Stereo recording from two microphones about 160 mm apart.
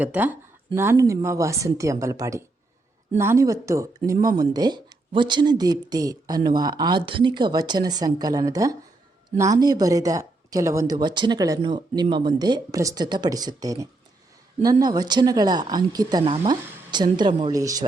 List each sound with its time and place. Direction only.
0.0 s speech: 10° right (ahead or behind)